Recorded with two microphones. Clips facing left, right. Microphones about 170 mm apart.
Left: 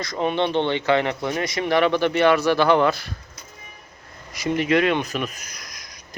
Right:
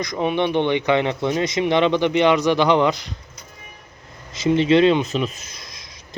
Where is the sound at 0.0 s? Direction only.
15° right (ahead or behind).